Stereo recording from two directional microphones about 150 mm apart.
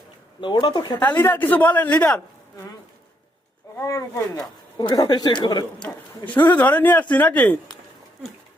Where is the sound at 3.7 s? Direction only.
20° left (ahead or behind).